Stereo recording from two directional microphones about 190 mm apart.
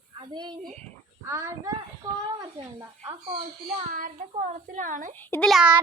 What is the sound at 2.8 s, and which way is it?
Speech, 25° right (ahead or behind).